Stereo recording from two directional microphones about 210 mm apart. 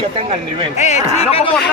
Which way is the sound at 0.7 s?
35° left (ahead or behind).